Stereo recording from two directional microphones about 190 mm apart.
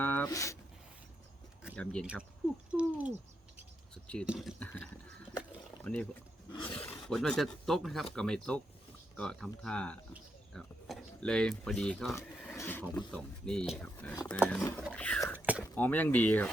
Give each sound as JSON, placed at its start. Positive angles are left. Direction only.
{"t": 0.0, "sound": "a sound", "side_deg": 10}
{"t": 1.7, "sound": "speech", "side_deg": 5}
{"t": 3.9, "sound": "speech", "side_deg": 5}
{"t": 5.8, "sound": "speech", "side_deg": 5}
{"t": 6.5, "sound": "roar", "side_deg": 25}
{"t": 7.1, "sound": "speech", "side_deg": 5}
{"t": 10.1, "sound": "bird", "side_deg": 0}
{"t": 12.1, "sound": "speech", "side_deg": 10}
{"t": 15.4, "sound": "a sound", "side_deg": -10}
{"t": 15.7, "sound": "speech", "side_deg": 10}